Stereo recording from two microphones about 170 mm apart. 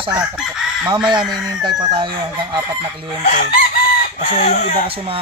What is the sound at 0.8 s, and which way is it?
Speech, 25° right (ahead or behind).